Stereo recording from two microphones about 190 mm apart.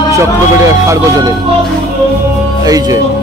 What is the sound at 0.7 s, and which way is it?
Speech, 15° right (ahead or behind).